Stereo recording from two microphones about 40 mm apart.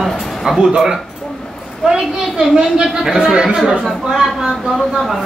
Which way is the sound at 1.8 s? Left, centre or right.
Right.